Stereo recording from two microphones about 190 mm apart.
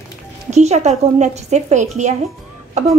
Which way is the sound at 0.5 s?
35° right (ahead or behind).